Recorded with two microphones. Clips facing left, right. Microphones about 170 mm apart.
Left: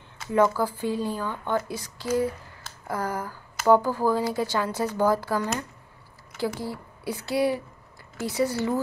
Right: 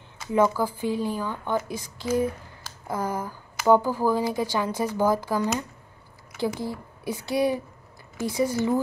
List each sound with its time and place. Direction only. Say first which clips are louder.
0.3 s speech: even; 15° right (ahead or behind)